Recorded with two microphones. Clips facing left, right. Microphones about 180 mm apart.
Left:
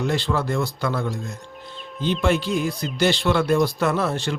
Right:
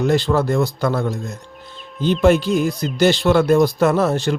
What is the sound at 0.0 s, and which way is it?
Speech, 45° right (ahead or behind).